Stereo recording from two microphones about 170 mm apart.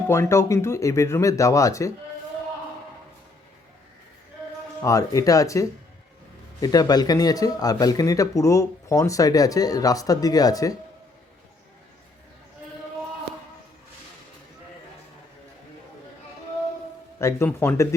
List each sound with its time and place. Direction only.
0.1 s speech: 15° left (ahead or behind)
4.8 s speech: 20° left (ahead or behind)
17.2 s speech: 15° left (ahead or behind)